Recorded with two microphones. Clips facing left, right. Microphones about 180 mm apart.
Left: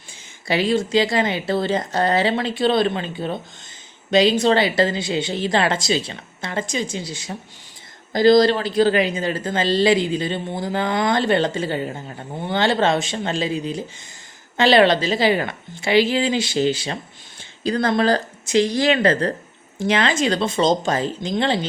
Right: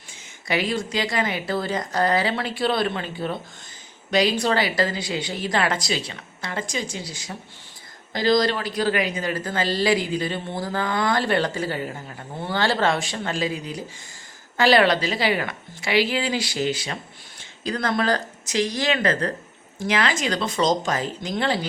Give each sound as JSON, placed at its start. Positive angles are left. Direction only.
{"t": 0.4, "sound": "speech", "side_deg": 30}